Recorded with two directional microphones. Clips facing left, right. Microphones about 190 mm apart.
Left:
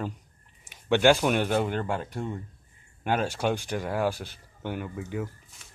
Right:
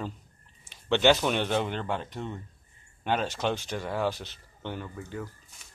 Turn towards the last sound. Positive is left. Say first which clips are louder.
# left 4 dB
turn(degrees=15)  # may be behind; listen again after turning